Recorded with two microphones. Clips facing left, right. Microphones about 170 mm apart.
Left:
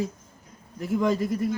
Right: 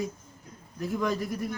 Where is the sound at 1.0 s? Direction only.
25° left (ahead or behind).